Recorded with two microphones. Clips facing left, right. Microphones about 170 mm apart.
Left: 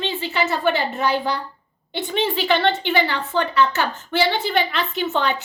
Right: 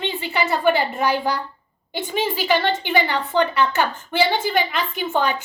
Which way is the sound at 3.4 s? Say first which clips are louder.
Left 4 dB; 60° right (ahead or behind).